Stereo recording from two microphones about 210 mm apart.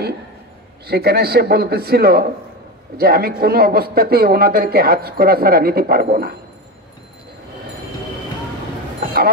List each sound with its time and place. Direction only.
0.8 s speech: 50° right (ahead or behind)